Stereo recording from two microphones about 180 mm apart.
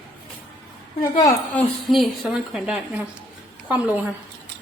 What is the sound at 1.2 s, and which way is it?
Speech, 15° left (ahead or behind).